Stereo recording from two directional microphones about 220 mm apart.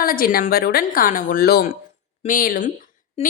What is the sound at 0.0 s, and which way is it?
A woman's voice, 40° left (ahead or behind).